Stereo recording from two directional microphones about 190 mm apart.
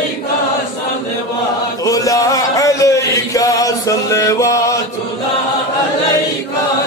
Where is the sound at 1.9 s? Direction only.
20° left (ahead or behind).